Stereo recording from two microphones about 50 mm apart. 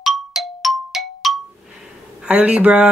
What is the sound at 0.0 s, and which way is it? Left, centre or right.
Clang, centre.